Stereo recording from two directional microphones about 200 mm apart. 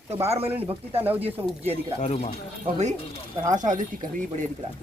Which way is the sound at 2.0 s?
30° left (ahead or behind).